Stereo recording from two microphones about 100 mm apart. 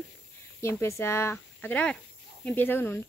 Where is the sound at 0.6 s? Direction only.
25° left (ahead or behind).